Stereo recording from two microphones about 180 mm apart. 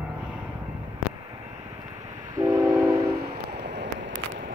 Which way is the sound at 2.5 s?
15° right (ahead or behind).